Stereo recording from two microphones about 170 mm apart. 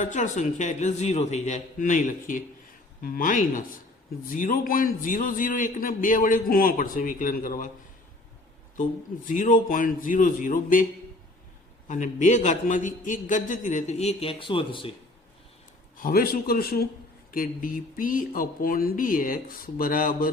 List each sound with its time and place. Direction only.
0.0 s a man's voice: 45° left (ahead or behind)
8.7 s a man's voice: 50° left (ahead or behind)
11.9 s a man's voice: 45° left (ahead or behind); by 14.9 s 30° left (ahead or behind)
16.0 s speech: 60° left (ahead or behind)